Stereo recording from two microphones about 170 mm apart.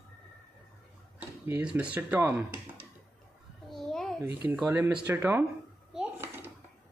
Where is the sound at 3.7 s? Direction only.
5° left (ahead or behind).